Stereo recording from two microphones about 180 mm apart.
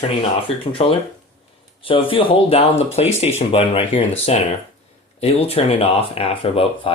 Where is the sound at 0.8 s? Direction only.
35° left (ahead or behind).